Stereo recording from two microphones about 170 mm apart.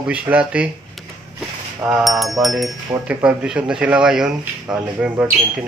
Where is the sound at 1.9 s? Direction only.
Centre (ahead or behind).